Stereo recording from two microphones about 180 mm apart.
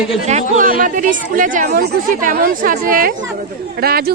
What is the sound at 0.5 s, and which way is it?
A woman's voice, 45° right (ahead or behind).